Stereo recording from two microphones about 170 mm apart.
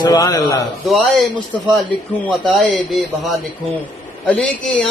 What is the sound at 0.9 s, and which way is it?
Speech, centre (ahead or behind).